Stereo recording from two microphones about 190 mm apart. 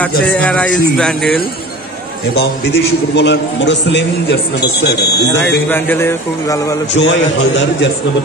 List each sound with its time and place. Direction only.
0.0 s speech: 5° left (ahead or behind)
3.2 s a man's voice: 65° left (ahead or behind)
5.7 s a man's voice: 10° left (ahead or behind)
6.9 s a man's voice: 70° left (ahead or behind)